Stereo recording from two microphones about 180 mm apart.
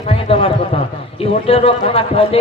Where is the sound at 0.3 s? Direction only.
30° left (ahead or behind).